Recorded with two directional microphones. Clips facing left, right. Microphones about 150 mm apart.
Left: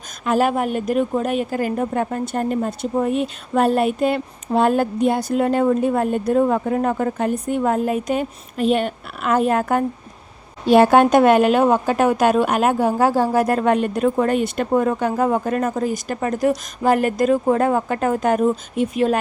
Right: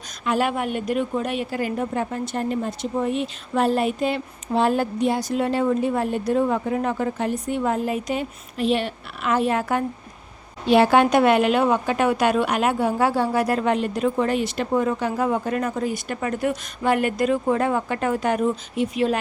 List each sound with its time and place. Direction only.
0.3 s a woman's voice: 40° left (ahead or behind)